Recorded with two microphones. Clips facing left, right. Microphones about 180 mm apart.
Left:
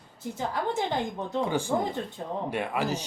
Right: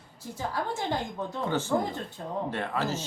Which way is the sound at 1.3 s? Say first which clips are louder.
Left 1 dB; 10° left (ahead or behind).